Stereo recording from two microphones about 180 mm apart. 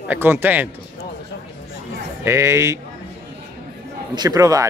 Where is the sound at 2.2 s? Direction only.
15° right (ahead or behind).